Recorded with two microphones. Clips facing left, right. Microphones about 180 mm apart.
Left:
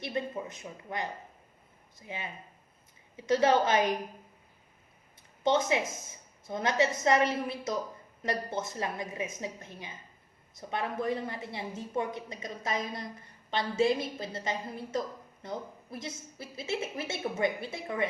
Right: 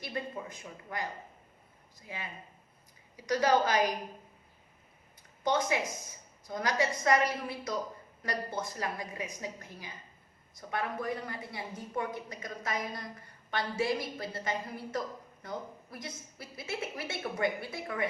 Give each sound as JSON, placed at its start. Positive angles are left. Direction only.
{"t": 0.0, "sound": "a woman's voice", "side_deg": 25}
{"t": 5.4, "sound": "a woman's voice", "side_deg": 25}